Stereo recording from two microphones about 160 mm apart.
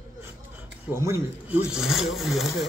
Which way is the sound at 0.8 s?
15° right (ahead or behind).